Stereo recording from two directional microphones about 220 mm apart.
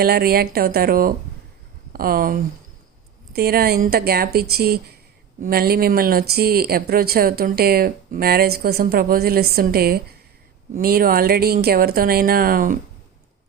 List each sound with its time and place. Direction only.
0.0 s speech: 45° right (ahead or behind)